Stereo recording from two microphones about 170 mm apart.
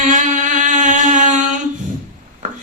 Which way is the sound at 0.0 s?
50° right (ahead or behind).